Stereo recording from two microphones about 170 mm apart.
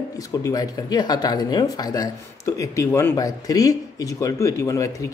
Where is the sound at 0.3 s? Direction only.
20° left (ahead or behind).